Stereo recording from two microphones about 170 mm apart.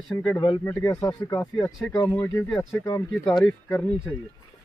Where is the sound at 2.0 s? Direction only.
15° left (ahead or behind).